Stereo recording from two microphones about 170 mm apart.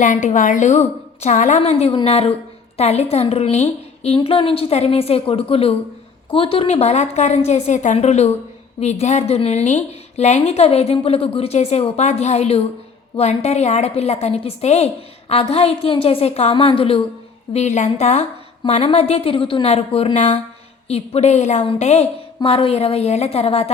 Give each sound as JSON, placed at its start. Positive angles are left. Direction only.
{"t": 0.0, "sound": "a woman's voice", "side_deg": 45}